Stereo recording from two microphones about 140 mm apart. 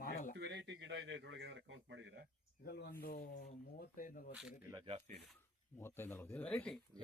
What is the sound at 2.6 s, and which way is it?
Speech, 90° left.